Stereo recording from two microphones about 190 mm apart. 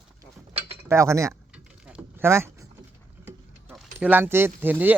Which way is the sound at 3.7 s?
5° right (ahead or behind).